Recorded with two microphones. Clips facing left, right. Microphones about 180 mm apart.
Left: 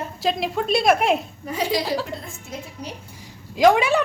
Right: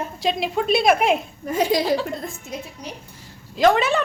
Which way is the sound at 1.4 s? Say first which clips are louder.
Right 5 dB; 45° right (ahead or behind).